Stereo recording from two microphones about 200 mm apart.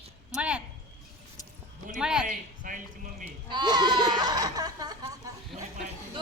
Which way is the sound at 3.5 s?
20° right (ahead or behind).